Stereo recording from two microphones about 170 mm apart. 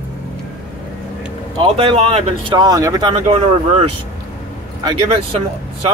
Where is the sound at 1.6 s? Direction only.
30° right (ahead or behind).